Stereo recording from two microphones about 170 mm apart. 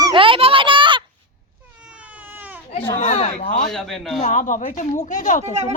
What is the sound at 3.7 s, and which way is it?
Speech, centre (ahead or behind).